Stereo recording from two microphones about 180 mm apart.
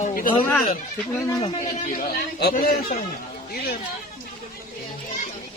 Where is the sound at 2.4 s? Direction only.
55° left (ahead or behind).